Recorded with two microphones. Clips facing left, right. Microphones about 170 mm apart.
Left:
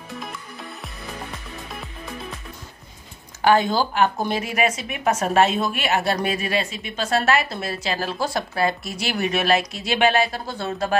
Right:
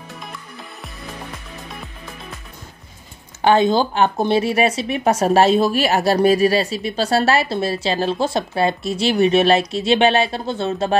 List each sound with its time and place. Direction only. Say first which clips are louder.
0.2 s music: left 1 dB; centre (ahead or behind)
3.4 s speech: right 3 dB; 25° right (ahead or behind)